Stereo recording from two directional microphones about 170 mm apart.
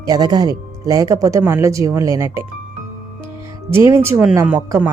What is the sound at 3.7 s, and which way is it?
Speech, 15° right (ahead or behind).